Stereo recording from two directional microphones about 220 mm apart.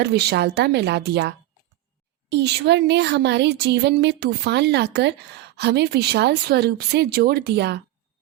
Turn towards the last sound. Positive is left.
turn(degrees=-45)  # may be behind; listen again after turning